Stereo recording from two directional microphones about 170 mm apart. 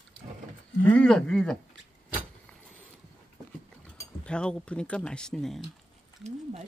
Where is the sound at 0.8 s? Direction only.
5° left (ahead or behind).